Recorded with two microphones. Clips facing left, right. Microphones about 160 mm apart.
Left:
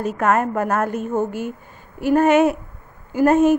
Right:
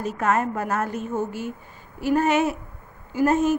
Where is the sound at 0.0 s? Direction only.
55° left (ahead or behind).